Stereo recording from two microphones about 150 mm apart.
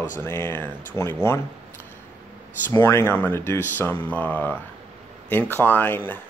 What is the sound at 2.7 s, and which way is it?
Speech, 15° left (ahead or behind).